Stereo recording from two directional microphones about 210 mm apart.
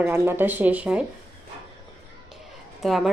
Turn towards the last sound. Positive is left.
turn(degrees=0)  # may be behind; listen again after turning